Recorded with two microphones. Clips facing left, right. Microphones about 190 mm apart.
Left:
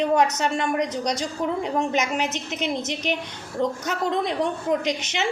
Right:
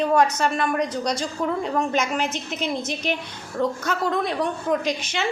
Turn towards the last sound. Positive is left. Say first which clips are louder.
# even
turn(degrees=20)  # may be behind; listen again after turning